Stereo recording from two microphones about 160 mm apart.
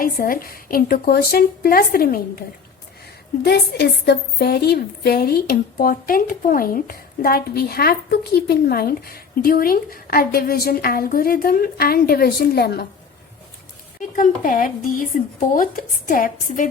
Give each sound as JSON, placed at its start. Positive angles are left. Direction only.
{"t": 0.0, "sound": "a woman's voice", "side_deg": 65}
{"t": 3.4, "sound": "a woman's voice", "side_deg": 90}
{"t": 14.2, "sound": "a woman's voice", "side_deg": 55}